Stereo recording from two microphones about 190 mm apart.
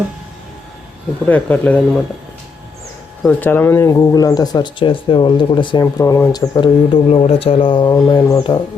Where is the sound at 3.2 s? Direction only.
10° left (ahead or behind).